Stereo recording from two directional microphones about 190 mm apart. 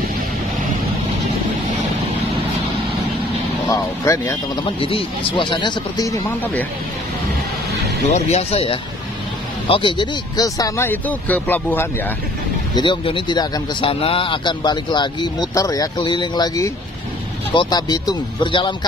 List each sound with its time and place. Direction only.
3.6 s speech: 15° left (ahead or behind)
4.7 s speech: 30° left (ahead or behind)
8.1 s speech: 35° left (ahead or behind); by 11.9 s 10° left (ahead or behind)
12.7 s speech: 25° left (ahead or behind)